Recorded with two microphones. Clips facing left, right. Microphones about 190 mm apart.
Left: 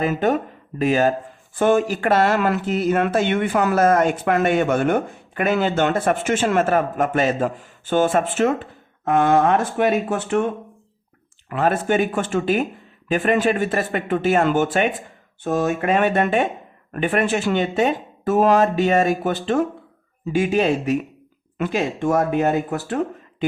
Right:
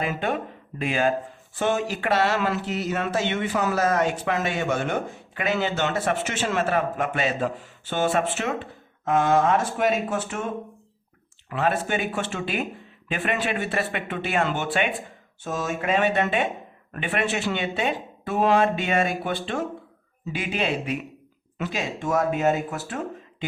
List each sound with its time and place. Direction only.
0.0 s speech: 45° left (ahead or behind)
9.0 s speech: 60° left (ahead or behind)
11.4 s speech: 50° left (ahead or behind)
15.4 s speech: 55° left (ahead or behind)